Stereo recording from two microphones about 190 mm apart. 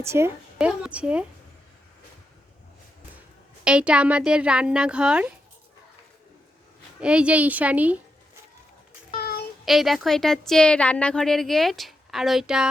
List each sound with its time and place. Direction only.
0.0 s a woman's voice: 15° right (ahead or behind)
3.6 s a woman's voice: 5° right (ahead or behind)
7.0 s a woman's voice: 5° right (ahead or behind)
9.1 s child singing: 55° left (ahead or behind)
9.6 s a woman's voice: centre (ahead or behind)